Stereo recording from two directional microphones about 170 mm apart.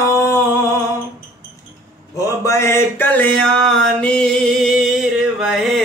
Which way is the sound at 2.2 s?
15° left (ahead or behind).